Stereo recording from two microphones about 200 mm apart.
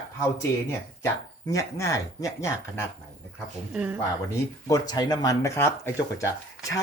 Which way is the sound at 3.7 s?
5° right (ahead or behind).